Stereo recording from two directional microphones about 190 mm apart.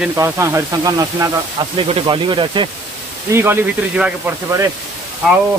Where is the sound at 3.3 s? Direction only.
10° right (ahead or behind).